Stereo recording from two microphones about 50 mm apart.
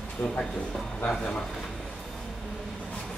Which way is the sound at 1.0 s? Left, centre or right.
Centre.